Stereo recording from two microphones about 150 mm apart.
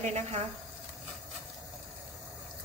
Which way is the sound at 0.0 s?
50° right (ahead or behind).